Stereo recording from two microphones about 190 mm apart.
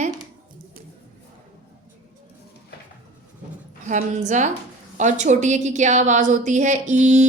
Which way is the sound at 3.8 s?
40° right (ahead or behind).